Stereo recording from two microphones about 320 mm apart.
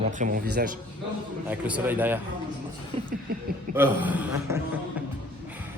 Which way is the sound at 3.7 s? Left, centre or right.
Centre.